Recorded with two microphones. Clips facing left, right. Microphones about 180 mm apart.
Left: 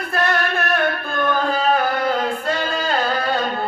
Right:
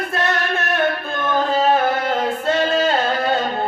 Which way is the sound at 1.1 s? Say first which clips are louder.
Even; 25° right (ahead or behind).